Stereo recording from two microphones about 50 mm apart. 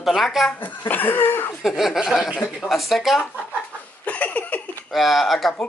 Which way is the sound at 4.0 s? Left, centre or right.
Left.